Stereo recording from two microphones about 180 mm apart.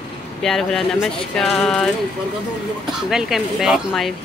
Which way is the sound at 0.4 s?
Centre (ahead or behind).